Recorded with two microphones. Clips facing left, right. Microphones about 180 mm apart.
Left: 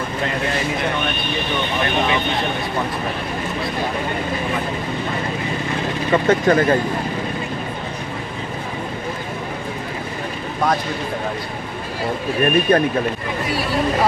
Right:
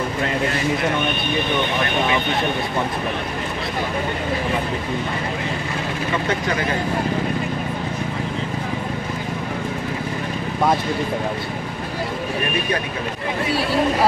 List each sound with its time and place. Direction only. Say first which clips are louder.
6.2 s speech: left 11 dB; 50° left (ahead or behind)